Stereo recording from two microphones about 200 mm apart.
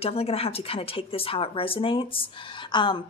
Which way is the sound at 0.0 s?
30° left (ahead or behind).